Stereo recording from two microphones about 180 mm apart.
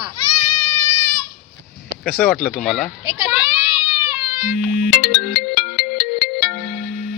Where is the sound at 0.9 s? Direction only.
15° left (ahead or behind).